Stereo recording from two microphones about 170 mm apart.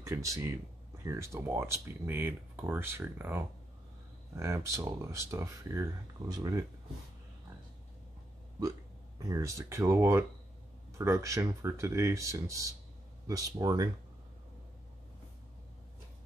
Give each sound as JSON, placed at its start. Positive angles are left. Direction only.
{"t": 0.0, "sound": "speech", "side_deg": -15}
{"t": 9.3, "sound": "speech", "side_deg": -15}